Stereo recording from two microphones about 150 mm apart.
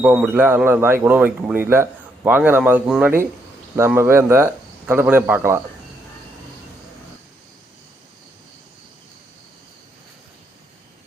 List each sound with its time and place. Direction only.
0.0 s a man's voice: 5° right (ahead or behind)